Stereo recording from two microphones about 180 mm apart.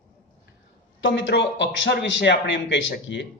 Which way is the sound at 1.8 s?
70° left (ahead or behind).